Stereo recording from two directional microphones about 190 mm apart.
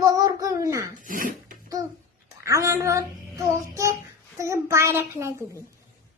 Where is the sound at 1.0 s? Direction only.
45° right (ahead or behind).